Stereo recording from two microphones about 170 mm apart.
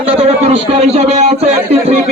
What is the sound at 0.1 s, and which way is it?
Speech, 40° right (ahead or behind).